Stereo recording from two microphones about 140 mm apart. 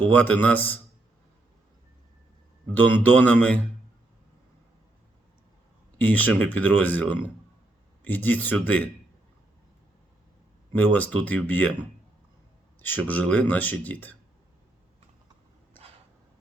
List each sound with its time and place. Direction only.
0.1 s speech: 15° left (ahead or behind)
2.7 s speech: 15° left (ahead or behind)
6.0 s speech: 10° left (ahead or behind)
10.7 s speech: 10° left (ahead or behind)
12.8 s speech: 10° left (ahead or behind)